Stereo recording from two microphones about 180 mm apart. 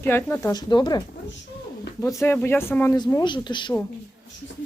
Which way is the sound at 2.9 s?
25° left (ahead or behind).